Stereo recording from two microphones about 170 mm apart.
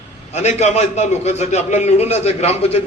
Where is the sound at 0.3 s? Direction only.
40° left (ahead or behind).